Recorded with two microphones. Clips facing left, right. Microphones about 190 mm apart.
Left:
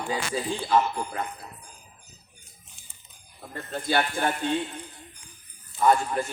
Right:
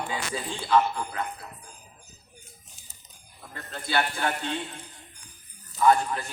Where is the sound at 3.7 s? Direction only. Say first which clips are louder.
Left 2 dB; 50° left (ahead or behind).